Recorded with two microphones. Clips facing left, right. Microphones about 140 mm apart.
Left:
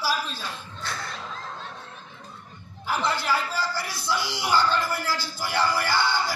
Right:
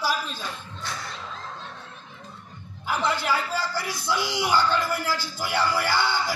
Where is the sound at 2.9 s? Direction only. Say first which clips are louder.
Right 1 dB; 15° right (ahead or behind).